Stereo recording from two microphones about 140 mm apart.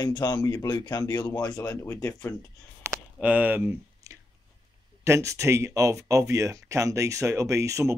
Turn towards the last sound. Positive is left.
turn(degrees=-20)  # may be behind; listen again after turning